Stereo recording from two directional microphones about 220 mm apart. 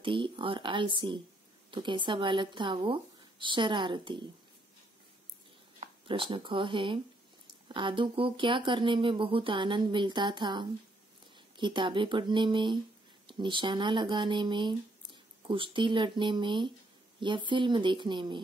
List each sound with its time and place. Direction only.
0.0 s speech: 25° right (ahead or behind)
5.8 s speech: 25° right (ahead or behind)